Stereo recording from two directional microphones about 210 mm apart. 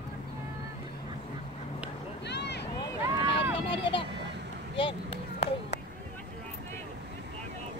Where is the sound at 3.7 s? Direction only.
25° left (ahead or behind).